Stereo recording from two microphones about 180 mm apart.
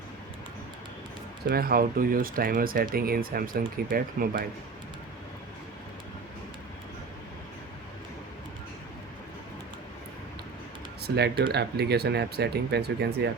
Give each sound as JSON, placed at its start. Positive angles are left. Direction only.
{"t": 1.5, "sound": "speech", "side_deg": -55}
{"t": 11.0, "sound": "speech", "side_deg": -65}